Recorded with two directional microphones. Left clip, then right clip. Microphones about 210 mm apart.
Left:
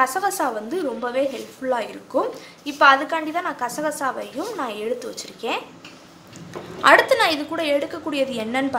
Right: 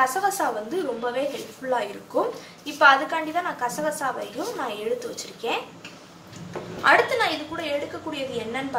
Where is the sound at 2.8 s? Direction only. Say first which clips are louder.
Left 2 dB; 55° left (ahead or behind).